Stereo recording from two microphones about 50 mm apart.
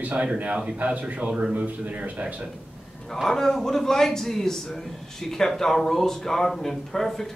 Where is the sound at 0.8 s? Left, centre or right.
Right.